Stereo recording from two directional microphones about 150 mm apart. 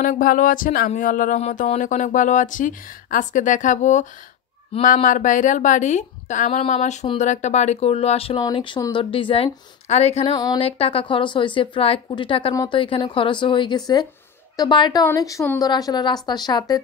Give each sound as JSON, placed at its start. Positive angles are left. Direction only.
{"t": 0.0, "sound": "speech", "side_deg": 65}
{"t": 1.4, "sound": "speech", "side_deg": 55}
{"t": 8.4, "sound": "speech", "side_deg": 30}
{"t": 10.3, "sound": "speech", "side_deg": 25}
{"t": 10.6, "sound": "a woman's voice", "side_deg": 40}